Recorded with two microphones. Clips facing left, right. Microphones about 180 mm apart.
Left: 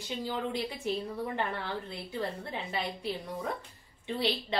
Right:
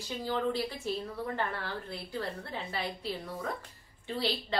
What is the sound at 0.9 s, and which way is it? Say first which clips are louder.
Speech: left 4 dB; 20° left (ahead or behind).